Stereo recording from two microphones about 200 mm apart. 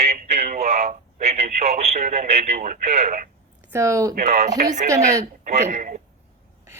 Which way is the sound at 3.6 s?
15° right (ahead or behind).